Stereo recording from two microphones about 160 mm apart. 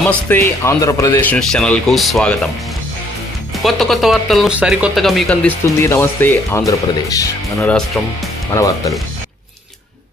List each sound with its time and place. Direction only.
0.0 s speech: 10° left (ahead or behind)
1.3 s speech: 5° left (ahead or behind)
3.6 s speech: centre (ahead or behind)
5.8 s speech: 15° left (ahead or behind)
8.5 s speech: 20° left (ahead or behind)